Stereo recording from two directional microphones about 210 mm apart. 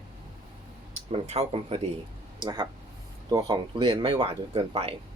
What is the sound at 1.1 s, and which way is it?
Speech, 30° right (ahead or behind).